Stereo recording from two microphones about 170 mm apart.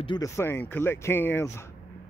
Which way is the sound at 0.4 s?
15° left (ahead or behind).